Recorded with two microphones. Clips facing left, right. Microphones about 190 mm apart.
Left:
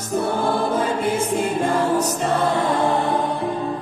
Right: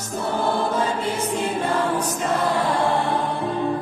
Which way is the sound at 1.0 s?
50° left (ahead or behind).